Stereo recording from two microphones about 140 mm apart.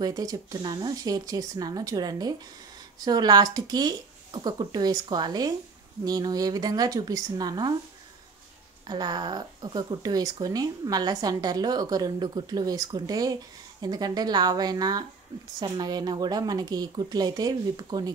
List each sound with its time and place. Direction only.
0.0 s speech: 25° right (ahead or behind)
8.8 s speech: 30° right (ahead or behind)